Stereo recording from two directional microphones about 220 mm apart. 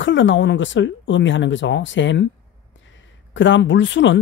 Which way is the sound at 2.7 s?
60° left (ahead or behind).